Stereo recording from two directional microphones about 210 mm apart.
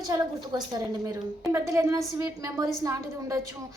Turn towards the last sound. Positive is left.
turn(degrees=-15)  # may be behind; listen again after turning